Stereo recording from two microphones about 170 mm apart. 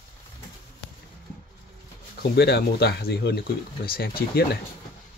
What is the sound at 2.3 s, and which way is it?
Speech, 70° left (ahead or behind).